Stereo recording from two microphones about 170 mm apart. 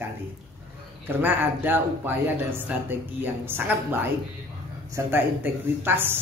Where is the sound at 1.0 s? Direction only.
10° right (ahead or behind).